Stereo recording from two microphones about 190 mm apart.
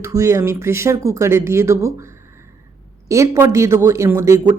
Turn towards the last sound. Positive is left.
turn(degrees=-15)  # may be behind; listen again after turning